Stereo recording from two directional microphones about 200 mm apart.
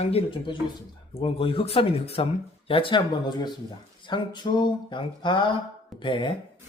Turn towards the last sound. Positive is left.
turn(degrees=25)  # may be behind; listen again after turning